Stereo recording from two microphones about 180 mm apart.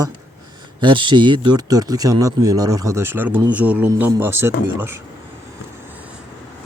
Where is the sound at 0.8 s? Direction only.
25° right (ahead or behind).